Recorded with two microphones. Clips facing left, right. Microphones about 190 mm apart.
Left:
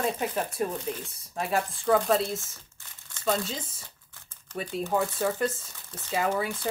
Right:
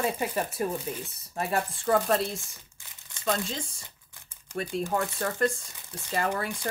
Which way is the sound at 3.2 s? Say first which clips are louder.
Left 1 dB; 5° left (ahead or behind).